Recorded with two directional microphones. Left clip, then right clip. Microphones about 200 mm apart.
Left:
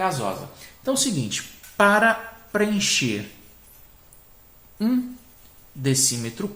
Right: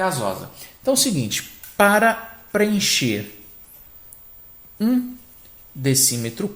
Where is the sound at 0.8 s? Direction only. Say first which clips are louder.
Right 4 dB; 30° right (ahead or behind).